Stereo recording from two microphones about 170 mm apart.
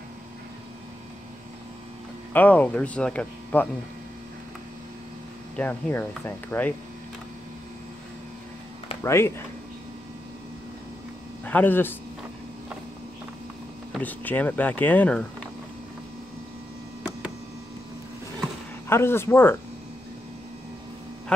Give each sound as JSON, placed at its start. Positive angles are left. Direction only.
{"t": 2.3, "sound": "speech", "side_deg": 10}
{"t": 5.6, "sound": "speech", "side_deg": 10}
{"t": 9.0, "sound": "speech", "side_deg": 15}
{"t": 11.4, "sound": "speech", "side_deg": 10}
{"t": 13.9, "sound": "speech", "side_deg": 10}
{"t": 18.9, "sound": "speech", "side_deg": 15}